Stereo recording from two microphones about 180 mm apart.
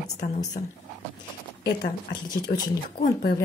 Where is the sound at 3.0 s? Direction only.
60° left (ahead or behind).